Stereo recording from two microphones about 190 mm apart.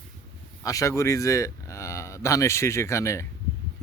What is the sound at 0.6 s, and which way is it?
Speech, 15° left (ahead or behind).